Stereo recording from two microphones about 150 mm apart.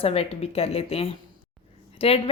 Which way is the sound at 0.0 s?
40° left (ahead or behind).